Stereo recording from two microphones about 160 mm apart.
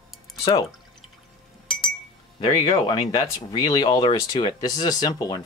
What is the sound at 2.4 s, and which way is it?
Speech, 35° left (ahead or behind).